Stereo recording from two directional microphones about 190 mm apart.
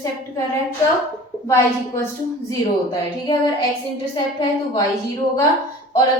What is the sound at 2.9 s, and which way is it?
Speech, 20° left (ahead or behind).